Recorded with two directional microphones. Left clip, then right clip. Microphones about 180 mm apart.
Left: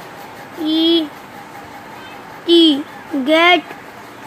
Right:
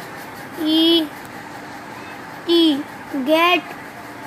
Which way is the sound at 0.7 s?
25° left (ahead or behind).